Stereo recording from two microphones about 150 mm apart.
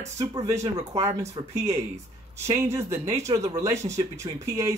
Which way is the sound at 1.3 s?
20° right (ahead or behind).